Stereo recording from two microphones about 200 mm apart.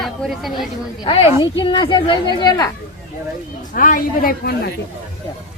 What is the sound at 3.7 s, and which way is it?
Speech, 45° left (ahead or behind).